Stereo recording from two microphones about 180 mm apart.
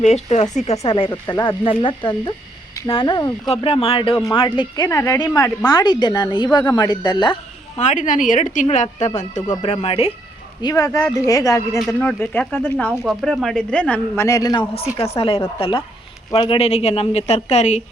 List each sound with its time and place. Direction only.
0.0 s a woman's voice: 40° left (ahead or behind)
1.1 s speech: 10° left (ahead or behind)
1.5 s a woman's voice: 30° left (ahead or behind)
7.8 s a woman's voice: 45° left (ahead or behind)
10.6 s speech: 20° left (ahead or behind)
14.3 s a woman's voice: 20° left (ahead or behind)
14.8 s a woman's voice: 35° left (ahead or behind)
16.6 s a woman's voice: 35° left (ahead or behind)